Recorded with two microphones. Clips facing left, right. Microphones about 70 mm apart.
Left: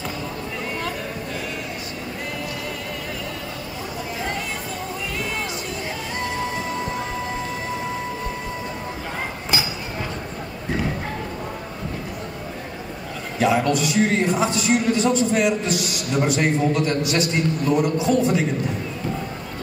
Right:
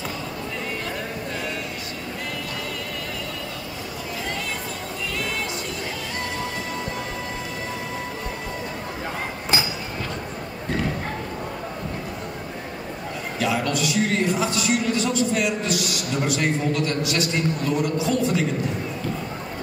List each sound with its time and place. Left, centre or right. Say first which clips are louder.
13.4 s a man's voice: left 5 dB; left